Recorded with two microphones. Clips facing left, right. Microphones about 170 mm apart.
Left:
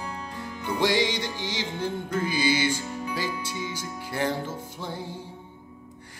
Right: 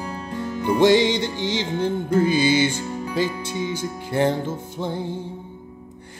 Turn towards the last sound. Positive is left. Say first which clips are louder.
# right 8 dB
turn(degrees=-20)  # may be behind; listen again after turning